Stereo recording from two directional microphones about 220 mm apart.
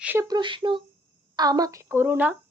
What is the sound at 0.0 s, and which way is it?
A woman's voice, 10° right (ahead or behind).